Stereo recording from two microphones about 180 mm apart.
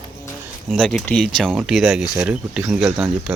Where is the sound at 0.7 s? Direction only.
5° left (ahead or behind).